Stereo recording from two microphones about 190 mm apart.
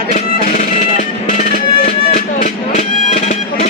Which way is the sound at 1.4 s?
45° left (ahead or behind).